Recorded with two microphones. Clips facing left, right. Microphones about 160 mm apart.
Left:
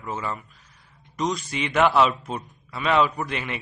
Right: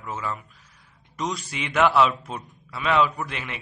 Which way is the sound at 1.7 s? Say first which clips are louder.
Even; 5° left (ahead or behind).